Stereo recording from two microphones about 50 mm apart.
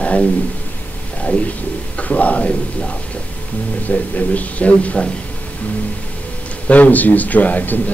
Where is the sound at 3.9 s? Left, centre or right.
Left.